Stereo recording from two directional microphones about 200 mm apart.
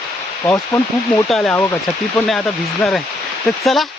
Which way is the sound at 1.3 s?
Centre (ahead or behind).